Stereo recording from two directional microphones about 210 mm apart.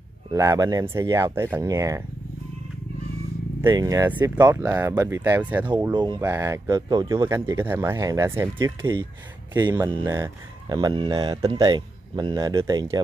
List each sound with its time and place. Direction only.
0.3 s speech: 15° right (ahead or behind)
3.6 s speech: 15° right (ahead or behind)
5.9 s speech: 20° right (ahead or behind)